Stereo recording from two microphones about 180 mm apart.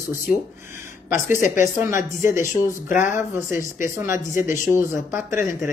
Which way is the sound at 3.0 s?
15° right (ahead or behind).